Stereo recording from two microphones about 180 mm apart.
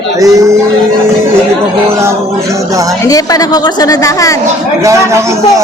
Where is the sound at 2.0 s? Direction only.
15° right (ahead or behind).